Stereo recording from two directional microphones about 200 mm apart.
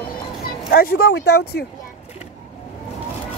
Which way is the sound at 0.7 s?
50° left (ahead or behind).